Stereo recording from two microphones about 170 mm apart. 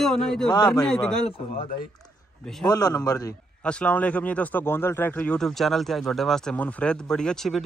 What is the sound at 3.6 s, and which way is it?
Speech, 5° left (ahead or behind).